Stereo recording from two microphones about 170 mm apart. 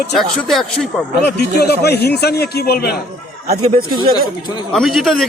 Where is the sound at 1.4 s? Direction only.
70° left (ahead or behind).